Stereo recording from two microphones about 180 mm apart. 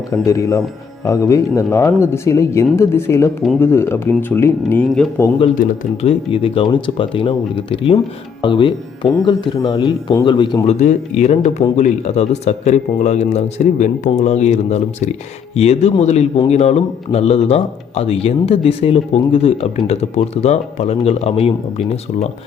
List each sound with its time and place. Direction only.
0.3 s speech: 15° left (ahead or behind)
5.5 s speech: 40° left (ahead or behind)
10.8 s speech: 40° left (ahead or behind)